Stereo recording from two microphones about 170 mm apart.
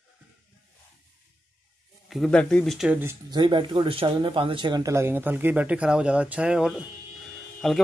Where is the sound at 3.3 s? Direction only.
30° right (ahead or behind).